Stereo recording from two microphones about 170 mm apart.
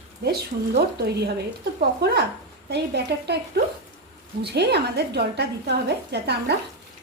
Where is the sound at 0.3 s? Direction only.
70° right (ahead or behind).